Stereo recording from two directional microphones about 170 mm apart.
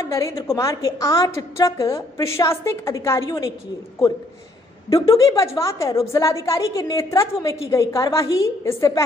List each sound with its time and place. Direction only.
0.0 s a woman's voice: 15° left (ahead or behind)
5.1 s a woman's voice: 20° left (ahead or behind)